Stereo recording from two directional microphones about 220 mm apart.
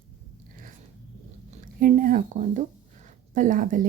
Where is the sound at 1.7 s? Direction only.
40° right (ahead or behind).